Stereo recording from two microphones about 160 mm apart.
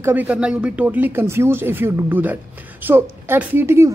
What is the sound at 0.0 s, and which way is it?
A woman's voice, 10° right (ahead or behind).